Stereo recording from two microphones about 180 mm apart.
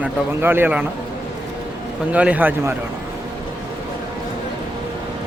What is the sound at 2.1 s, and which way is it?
Speech, 10° right (ahead or behind).